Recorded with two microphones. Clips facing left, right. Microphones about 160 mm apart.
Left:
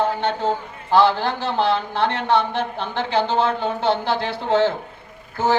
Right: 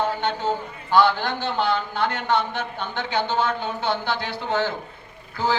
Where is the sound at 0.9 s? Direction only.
30° left (ahead or behind).